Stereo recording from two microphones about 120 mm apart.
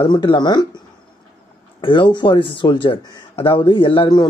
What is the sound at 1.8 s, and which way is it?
Speech, 40° left (ahead or behind).